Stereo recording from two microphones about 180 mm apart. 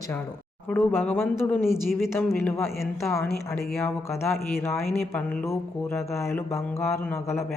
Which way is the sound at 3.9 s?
15° left (ahead or behind).